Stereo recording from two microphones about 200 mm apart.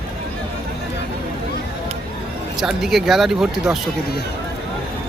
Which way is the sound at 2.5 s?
Centre (ahead or behind).